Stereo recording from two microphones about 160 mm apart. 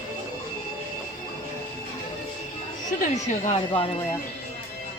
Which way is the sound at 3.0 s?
45° left (ahead or behind).